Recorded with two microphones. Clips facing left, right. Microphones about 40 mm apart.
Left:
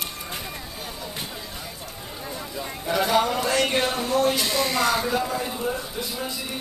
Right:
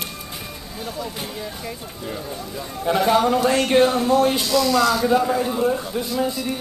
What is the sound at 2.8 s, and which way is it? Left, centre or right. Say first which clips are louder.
Speech: right 4 dB; right.